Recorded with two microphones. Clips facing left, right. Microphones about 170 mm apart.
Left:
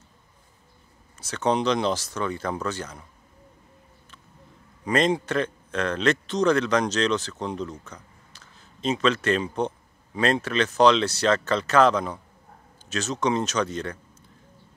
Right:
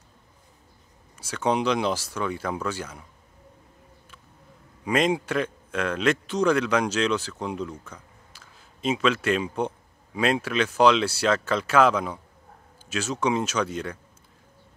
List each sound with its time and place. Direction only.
1.1 s a man's voice: 10° right (ahead or behind)
4.8 s a man's voice: 10° right (ahead or behind)